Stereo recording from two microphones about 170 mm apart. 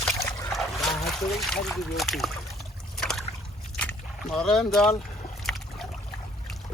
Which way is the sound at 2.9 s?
5° left (ahead or behind).